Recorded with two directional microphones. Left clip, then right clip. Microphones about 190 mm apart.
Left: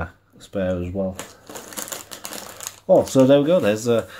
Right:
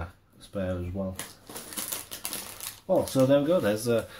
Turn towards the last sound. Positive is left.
turn(degrees=25)  # may be behind; listen again after turning